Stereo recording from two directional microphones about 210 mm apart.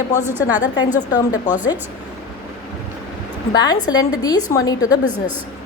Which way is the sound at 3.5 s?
20° left (ahead or behind).